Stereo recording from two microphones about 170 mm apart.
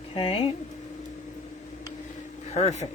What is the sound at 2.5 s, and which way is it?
Speech, 40° left (ahead or behind).